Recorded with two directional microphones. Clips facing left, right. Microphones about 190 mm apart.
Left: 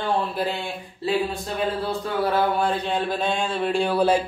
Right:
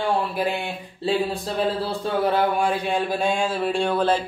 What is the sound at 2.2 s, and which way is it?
Speech, 15° right (ahead or behind).